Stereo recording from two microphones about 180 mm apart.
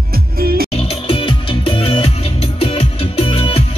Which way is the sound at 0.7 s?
30° left (ahead or behind).